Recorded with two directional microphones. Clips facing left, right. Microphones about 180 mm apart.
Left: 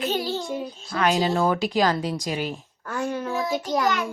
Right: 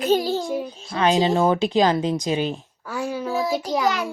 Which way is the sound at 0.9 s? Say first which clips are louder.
Right 3 dB; 20° right (ahead or behind).